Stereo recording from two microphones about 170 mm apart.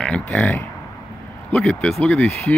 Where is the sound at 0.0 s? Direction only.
5° left (ahead or behind).